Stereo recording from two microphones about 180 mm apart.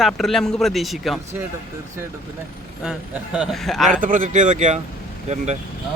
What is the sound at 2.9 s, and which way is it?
Speech, 5° right (ahead or behind).